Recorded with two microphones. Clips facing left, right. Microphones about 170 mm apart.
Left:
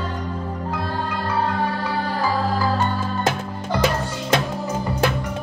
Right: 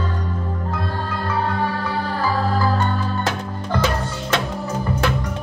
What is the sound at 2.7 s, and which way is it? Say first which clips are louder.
Music: right 1 dB; 15° left (ahead or behind).